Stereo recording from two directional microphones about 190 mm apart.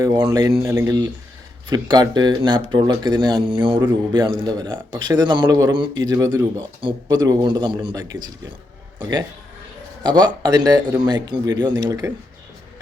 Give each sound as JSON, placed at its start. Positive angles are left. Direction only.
{"t": 0.0, "sound": "speech", "side_deg": -20}
{"t": 9.0, "sound": "a man's voice", "side_deg": -20}